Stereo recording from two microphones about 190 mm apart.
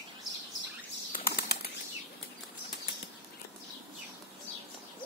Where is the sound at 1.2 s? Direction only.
55° left (ahead or behind).